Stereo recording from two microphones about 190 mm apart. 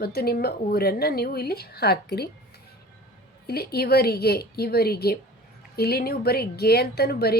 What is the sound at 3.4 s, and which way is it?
A woman's voice, 55° left (ahead or behind).